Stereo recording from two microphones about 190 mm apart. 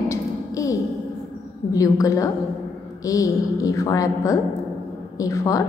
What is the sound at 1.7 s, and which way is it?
A woman's voice, 15° left (ahead or behind).